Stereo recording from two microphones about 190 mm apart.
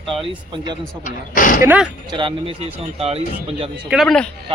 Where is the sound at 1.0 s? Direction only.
45° left (ahead or behind).